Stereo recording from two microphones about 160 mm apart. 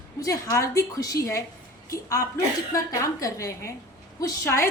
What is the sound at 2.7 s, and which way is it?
A woman's voice, 20° left (ahead or behind).